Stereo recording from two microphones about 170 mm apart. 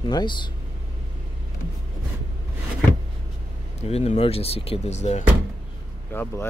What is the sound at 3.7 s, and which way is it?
Speech, 35° left (ahead or behind).